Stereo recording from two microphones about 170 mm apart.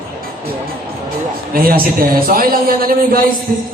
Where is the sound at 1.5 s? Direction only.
60° right (ahead or behind).